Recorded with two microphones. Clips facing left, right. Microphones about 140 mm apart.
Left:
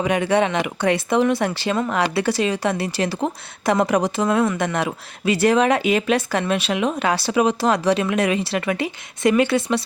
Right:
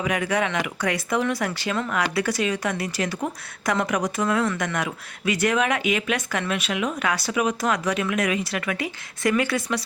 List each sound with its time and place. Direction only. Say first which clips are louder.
0.0 s a woman's voice: left 5 dB; 30° left (ahead or behind)